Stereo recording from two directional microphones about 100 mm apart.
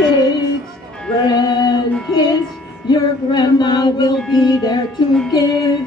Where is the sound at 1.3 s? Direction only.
40° left (ahead or behind).